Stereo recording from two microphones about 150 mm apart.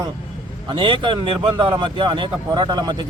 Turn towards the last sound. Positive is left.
turn(degrees=-30)  # may be behind; listen again after turning